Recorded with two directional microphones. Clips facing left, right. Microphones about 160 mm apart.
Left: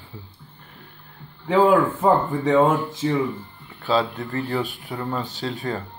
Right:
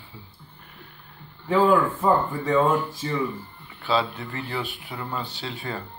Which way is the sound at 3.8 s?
40° left (ahead or behind).